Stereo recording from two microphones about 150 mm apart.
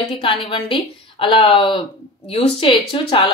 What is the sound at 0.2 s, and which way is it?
A woman's voice, 35° left (ahead or behind).